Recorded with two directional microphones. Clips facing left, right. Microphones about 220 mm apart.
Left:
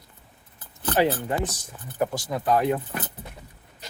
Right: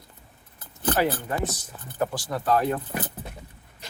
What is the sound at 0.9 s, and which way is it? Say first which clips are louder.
Speech: left 4 dB; 20° left (ahead or behind).